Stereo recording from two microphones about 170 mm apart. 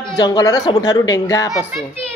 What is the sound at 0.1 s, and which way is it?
A woman's voice, 25° left (ahead or behind).